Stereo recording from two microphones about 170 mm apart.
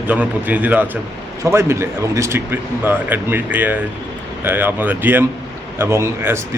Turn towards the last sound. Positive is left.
turn(degrees=-15)  # may be behind; listen again after turning